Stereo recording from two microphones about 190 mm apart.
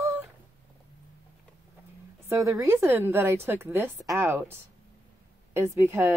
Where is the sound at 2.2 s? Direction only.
15° right (ahead or behind).